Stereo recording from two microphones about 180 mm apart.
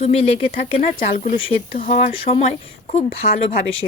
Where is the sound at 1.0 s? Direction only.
50° left (ahead or behind).